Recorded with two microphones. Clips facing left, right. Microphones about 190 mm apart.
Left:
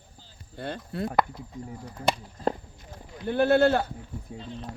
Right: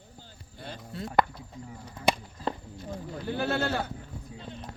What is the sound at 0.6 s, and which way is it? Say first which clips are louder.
Chop: left 7 dB; 60° left (ahead or behind).